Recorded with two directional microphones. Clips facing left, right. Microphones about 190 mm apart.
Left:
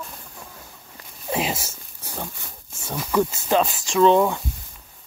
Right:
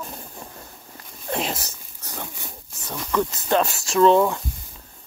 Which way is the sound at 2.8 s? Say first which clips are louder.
Left 2 dB; 10° left (ahead or behind).